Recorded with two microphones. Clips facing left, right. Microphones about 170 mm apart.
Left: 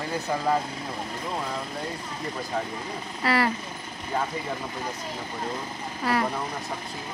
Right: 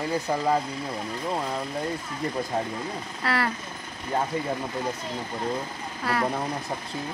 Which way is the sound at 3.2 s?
5° left (ahead or behind).